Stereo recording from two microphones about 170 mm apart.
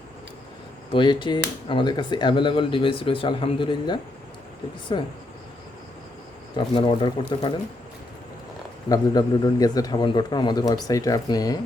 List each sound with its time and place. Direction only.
0.9 s speech: 30° left (ahead or behind)
6.7 s speech: 30° left (ahead or behind)
8.9 s speech: 20° left (ahead or behind)